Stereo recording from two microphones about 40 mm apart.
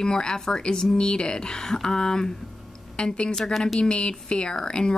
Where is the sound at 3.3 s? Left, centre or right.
Centre.